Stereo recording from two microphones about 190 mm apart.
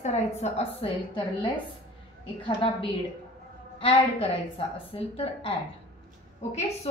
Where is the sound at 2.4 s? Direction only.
30° left (ahead or behind).